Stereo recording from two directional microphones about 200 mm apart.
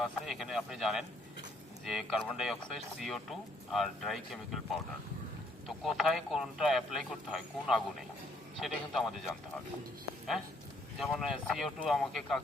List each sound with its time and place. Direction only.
0.0 s speech: centre (ahead or behind)
5.6 s speech: centre (ahead or behind)
11.0 s speech: centre (ahead or behind)